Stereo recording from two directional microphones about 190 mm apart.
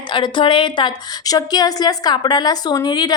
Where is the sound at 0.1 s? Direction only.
25° left (ahead or behind).